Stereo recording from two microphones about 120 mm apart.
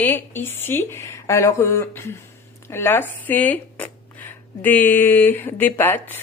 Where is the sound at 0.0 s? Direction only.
15° left (ahead or behind).